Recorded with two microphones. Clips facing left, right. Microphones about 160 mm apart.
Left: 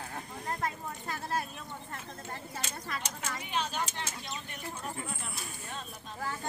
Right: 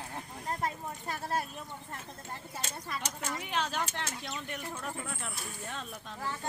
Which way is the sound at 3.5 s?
90° right.